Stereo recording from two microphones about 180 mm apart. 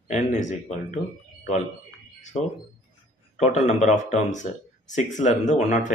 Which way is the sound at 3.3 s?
40° left (ahead or behind).